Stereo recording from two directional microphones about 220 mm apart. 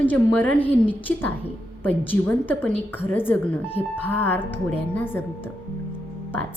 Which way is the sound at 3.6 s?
25° left (ahead or behind).